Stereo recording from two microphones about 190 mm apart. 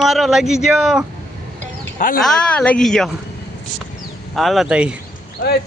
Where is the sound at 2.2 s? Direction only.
5° left (ahead or behind).